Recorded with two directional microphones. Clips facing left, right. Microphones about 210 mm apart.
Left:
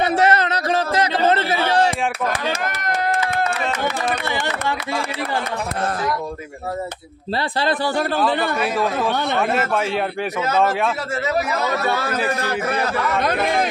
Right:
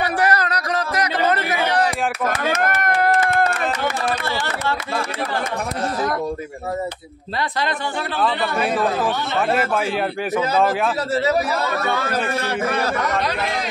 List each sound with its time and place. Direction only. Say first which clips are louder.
0.0 s a sound: left 3 dB; 25° left (ahead or behind)
9.0 s a man's voice: left 1 dB; centre (ahead or behind)
12.4 s a man's voice: even; 35° left (ahead or behind)
13.2 s speech: left 4 dB; 50° left (ahead or behind)